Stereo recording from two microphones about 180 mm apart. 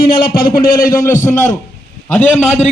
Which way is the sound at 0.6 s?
50° left (ahead or behind).